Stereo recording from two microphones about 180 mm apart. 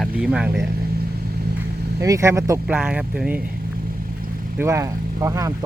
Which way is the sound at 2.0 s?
15° right (ahead or behind).